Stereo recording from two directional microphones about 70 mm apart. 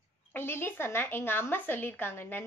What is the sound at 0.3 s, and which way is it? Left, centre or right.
A woman's voice, left.